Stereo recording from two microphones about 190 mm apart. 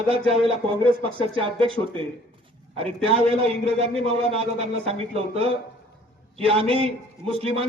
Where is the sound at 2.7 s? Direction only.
30° right (ahead or behind).